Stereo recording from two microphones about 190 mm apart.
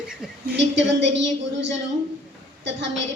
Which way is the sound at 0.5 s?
70° right (ahead or behind).